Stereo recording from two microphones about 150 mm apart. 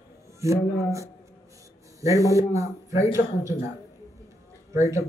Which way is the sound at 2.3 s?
20° right (ahead or behind).